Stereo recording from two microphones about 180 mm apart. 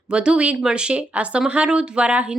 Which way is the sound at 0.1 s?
5° right (ahead or behind).